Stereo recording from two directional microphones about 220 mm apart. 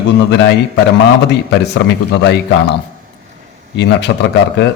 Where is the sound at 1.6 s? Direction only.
50° left (ahead or behind).